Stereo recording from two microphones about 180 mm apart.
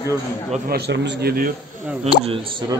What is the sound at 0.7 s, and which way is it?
Speech, 70° right (ahead or behind).